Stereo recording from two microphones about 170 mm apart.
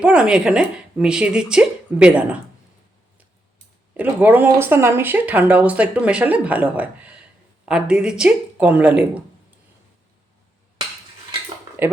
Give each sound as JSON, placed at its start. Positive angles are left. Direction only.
{"t": 0.0, "sound": "speech", "side_deg": -5}
{"t": 3.9, "sound": "speech", "side_deg": -10}
{"t": 11.8, "sound": "speech", "side_deg": -10}